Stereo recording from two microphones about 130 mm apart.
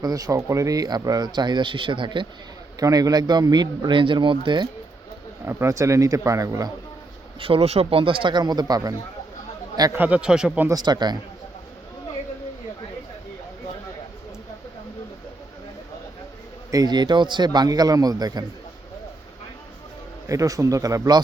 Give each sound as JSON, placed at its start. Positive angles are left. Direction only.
{"t": 0.0, "sound": "speech", "side_deg": -30}
{"t": 2.8, "sound": "speech", "side_deg": -30}
{"t": 5.5, "sound": "a man's voice", "side_deg": -20}
{"t": 7.3, "sound": "speech", "side_deg": -45}
{"t": 9.9, "sound": "a man's voice", "side_deg": -10}
{"t": 10.7, "sound": "speech", "side_deg": -30}
{"t": 16.7, "sound": "speech", "side_deg": -30}
{"t": 20.2, "sound": "a man's voice", "side_deg": -25}